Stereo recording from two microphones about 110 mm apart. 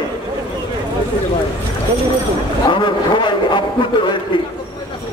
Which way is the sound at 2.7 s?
45° left (ahead or behind).